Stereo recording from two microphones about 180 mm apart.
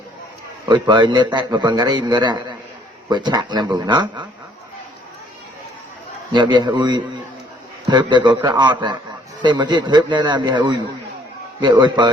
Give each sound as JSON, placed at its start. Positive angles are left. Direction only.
{"t": 0.6, "sound": "a man's voice", "side_deg": -25}
{"t": 6.3, "sound": "a man's voice", "side_deg": -25}